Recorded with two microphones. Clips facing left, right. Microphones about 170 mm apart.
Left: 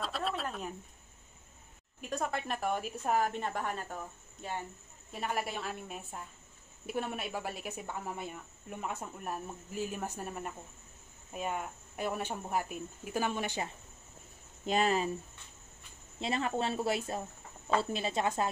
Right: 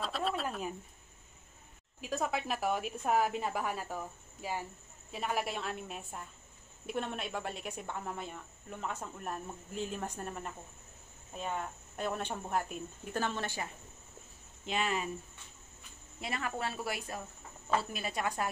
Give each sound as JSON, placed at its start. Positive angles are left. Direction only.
{"t": 0.0, "sound": "a sound", "side_deg": 0}
{"t": 2.0, "sound": "a woman's voice", "side_deg": 0}
{"t": 14.7, "sound": "speech", "side_deg": 35}
{"t": 16.2, "sound": "speech", "side_deg": 25}